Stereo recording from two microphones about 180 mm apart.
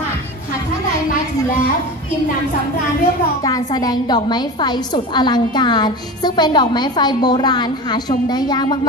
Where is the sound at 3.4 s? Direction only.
20° left (ahead or behind).